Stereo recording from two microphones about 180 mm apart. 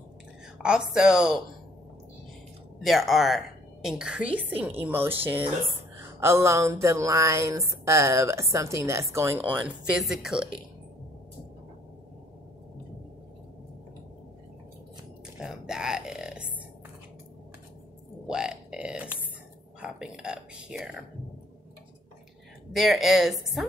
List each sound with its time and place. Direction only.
0.6 s a woman's voice: 5° right (ahead or behind)
2.8 s a woman's voice: centre (ahead or behind)
15.3 s a sound: 5° right (ahead or behind)
18.2 s grunt: 5° right (ahead or behind)
19.8 s whispering: 5° right (ahead or behind)
22.7 s a woman's voice: centre (ahead or behind)